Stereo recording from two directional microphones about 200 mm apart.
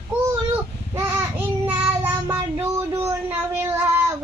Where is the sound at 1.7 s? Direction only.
10° right (ahead or behind).